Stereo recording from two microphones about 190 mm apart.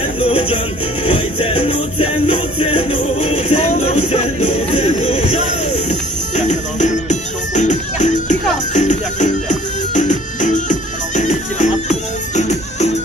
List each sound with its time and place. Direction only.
0.2 s music: 30° left (ahead or behind)